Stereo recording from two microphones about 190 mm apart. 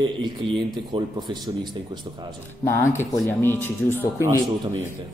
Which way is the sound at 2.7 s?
10° left (ahead or behind).